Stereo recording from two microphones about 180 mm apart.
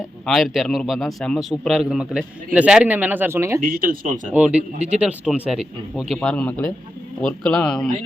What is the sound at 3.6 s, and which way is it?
Speech, 50° right (ahead or behind).